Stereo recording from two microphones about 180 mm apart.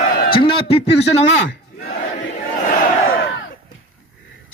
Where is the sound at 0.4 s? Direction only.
30° left (ahead or behind).